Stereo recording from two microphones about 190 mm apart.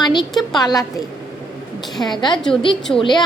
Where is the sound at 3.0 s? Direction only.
25° left (ahead or behind).